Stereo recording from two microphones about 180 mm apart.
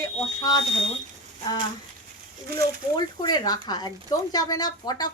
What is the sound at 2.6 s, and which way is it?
Speech, 20° left (ahead or behind).